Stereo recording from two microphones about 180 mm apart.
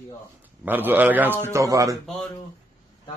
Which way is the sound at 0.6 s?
10° right (ahead or behind).